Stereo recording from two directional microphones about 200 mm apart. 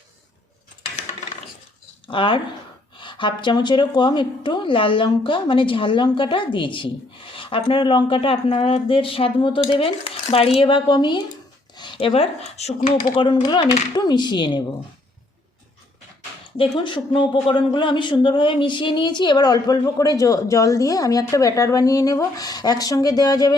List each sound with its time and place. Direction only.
2.0 s speech: 25° left (ahead or behind)
16.6 s speech: 25° left (ahead or behind)